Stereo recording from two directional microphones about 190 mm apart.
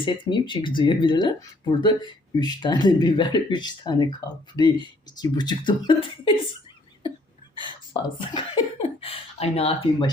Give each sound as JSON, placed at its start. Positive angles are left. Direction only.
{"t": 0.0, "sound": "speech", "side_deg": 25}
{"t": 8.3, "sound": "speech", "side_deg": 25}